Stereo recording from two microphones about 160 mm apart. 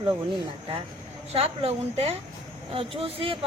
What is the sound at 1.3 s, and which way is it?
Speech, 40° right (ahead or behind).